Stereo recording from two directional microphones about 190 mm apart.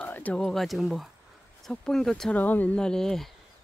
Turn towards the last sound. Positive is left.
turn(degrees=0)  # may be behind; listen again after turning